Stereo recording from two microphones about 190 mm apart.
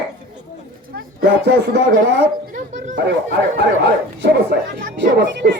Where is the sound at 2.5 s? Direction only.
45° right (ahead or behind).